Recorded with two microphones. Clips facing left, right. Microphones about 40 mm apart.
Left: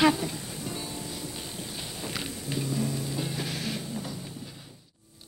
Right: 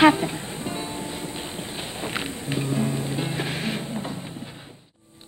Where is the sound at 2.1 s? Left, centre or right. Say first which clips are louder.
Right 5 dB; right.